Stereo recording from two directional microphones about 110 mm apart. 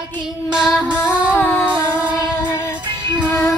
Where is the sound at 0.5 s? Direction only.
5° right (ahead or behind).